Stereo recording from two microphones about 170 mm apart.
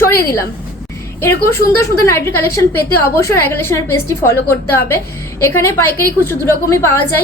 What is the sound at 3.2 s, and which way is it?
A woman's voice, 15° left (ahead or behind).